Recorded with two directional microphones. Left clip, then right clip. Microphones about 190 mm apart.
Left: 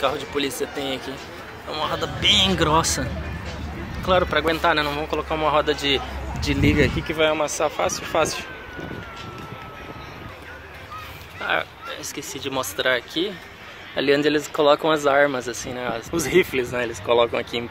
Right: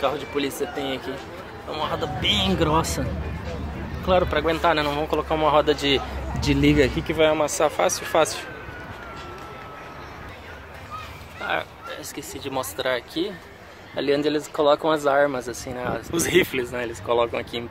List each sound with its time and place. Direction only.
0.0 s a man's voice: centre (ahead or behind); by 8.5 s 15° right (ahead or behind)
11.4 s speech: 10° left (ahead or behind)